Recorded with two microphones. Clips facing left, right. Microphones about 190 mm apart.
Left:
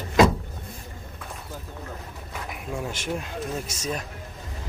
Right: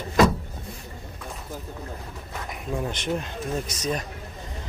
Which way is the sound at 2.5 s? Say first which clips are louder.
Right 3 dB; 5° left (ahead or behind).